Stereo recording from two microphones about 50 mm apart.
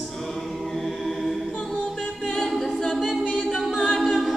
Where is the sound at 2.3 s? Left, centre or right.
Centre.